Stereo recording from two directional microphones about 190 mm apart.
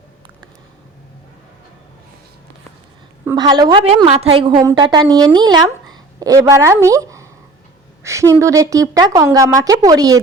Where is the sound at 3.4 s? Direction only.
20° right (ahead or behind).